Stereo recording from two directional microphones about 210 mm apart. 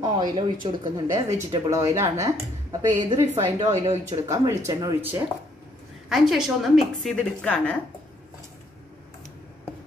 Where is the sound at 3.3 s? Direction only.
30° right (ahead or behind).